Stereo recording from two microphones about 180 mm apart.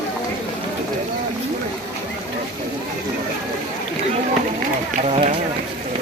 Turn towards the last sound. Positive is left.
turn(degrees=-35)  # may be behind; listen again after turning